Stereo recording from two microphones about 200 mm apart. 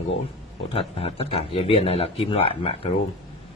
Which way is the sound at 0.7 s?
30° left (ahead or behind).